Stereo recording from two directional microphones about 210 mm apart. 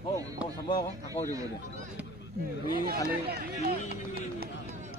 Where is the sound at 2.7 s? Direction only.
45° right (ahead or behind).